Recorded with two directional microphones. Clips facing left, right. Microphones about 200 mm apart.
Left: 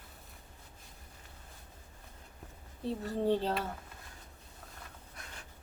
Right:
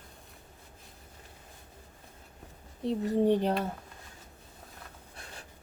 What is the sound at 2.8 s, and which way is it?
Speech, 15° right (ahead or behind).